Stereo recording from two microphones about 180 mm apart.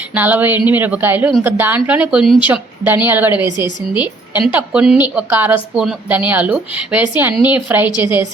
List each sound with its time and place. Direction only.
0.1 s a woman's voice: 10° right (ahead or behind)